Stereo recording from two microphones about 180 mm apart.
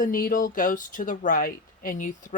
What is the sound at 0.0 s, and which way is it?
Speech, 50° left (ahead or behind).